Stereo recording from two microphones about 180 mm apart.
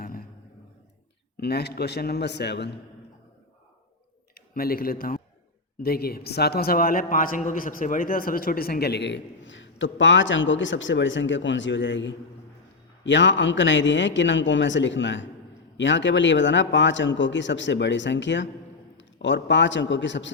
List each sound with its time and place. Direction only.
1.4 s a man's voice: 65° left (ahead or behind)
4.4 s a man's voice: 55° left (ahead or behind); by 20.3 s 85° left